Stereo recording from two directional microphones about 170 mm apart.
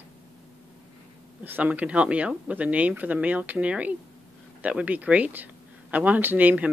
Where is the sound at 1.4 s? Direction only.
10° right (ahead or behind).